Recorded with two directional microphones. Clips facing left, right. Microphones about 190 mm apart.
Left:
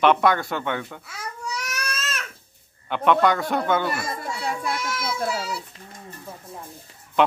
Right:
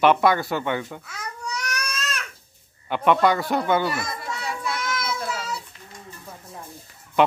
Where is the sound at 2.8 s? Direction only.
5° right (ahead or behind).